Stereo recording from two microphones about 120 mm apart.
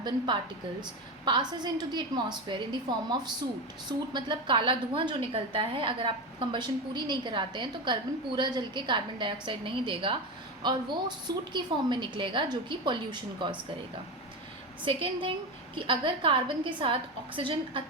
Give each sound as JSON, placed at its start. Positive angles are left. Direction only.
{"t": 0.8, "sound": "a woman's voice", "side_deg": -40}
{"t": 14.8, "sound": "a woman's voice", "side_deg": -45}